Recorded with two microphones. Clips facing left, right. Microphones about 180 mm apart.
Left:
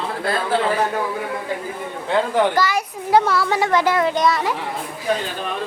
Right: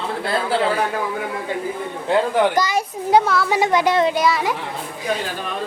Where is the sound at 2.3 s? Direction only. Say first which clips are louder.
Even; 20° right (ahead or behind).